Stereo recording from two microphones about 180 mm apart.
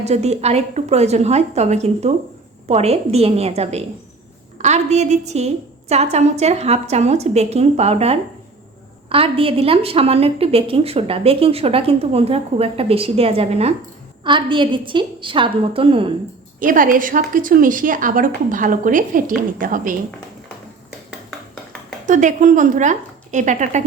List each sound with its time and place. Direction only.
0.0 s a woman's voice: 35° right (ahead or behind)
16.6 s a woman's voice: 50° right (ahead or behind)
21.2 s a sound: 5° left (ahead or behind)
22.0 s a woman's voice: 45° right (ahead or behind)